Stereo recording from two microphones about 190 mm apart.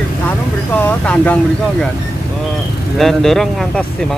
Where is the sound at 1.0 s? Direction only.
5° left (ahead or behind).